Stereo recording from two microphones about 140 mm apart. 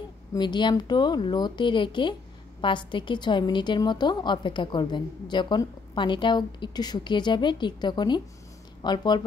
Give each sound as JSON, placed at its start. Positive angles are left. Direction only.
{"t": 0.3, "sound": "a woman's voice", "side_deg": 30}